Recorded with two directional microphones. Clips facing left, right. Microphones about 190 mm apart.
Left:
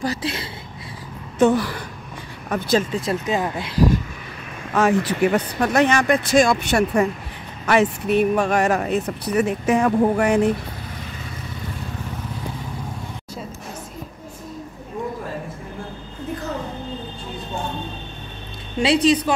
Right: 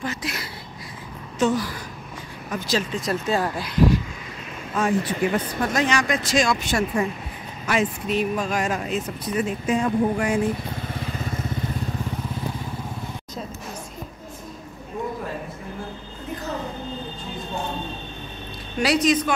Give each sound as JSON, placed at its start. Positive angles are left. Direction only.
{"t": 0.0, "sound": "a sound", "side_deg": 30}
{"t": 1.4, "sound": "speech", "side_deg": 60}
{"t": 3.1, "sound": "speech", "side_deg": 20}
{"t": 4.7, "sound": "speech", "side_deg": 85}
{"t": 18.8, "sound": "speech", "side_deg": 30}